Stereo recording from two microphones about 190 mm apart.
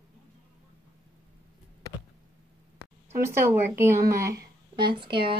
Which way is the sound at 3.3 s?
15° right (ahead or behind).